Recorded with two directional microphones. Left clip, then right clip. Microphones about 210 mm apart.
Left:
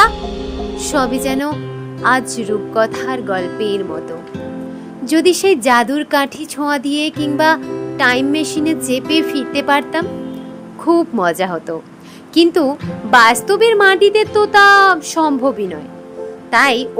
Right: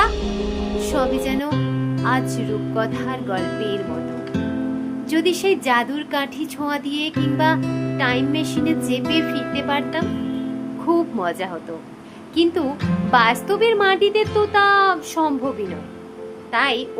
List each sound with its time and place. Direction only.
0.8 s a woman's voice: 25° left (ahead or behind)
5.0 s speech: 25° left (ahead or behind)